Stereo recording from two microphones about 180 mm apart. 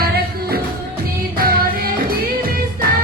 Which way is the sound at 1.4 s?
55° right (ahead or behind).